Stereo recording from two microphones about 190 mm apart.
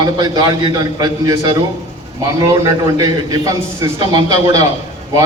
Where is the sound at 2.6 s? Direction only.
20° right (ahead or behind).